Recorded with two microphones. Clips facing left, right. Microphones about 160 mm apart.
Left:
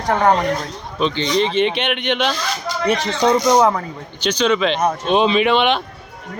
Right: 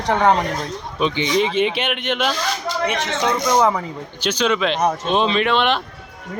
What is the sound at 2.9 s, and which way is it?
Speech, 35° left (ahead or behind).